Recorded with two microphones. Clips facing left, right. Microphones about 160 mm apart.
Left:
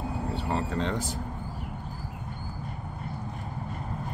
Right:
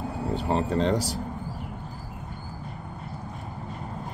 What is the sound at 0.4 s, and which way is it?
Speech, 85° right.